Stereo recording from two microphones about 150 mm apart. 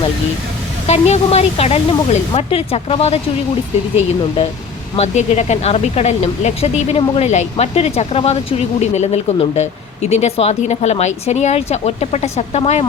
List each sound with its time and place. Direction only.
0.9 s speech: 45° left (ahead or behind)
4.9 s speech: 50° left (ahead or behind)